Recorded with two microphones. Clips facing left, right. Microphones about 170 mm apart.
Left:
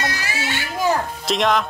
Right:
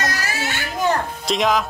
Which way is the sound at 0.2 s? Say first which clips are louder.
Even; 45° right (ahead or behind).